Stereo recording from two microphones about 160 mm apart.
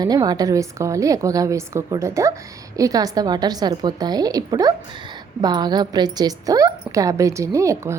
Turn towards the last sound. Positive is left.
turn(degrees=-20)  # may be behind; listen again after turning